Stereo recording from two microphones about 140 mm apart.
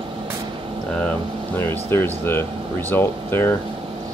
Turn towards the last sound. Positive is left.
turn(degrees=15)  # may be behind; listen again after turning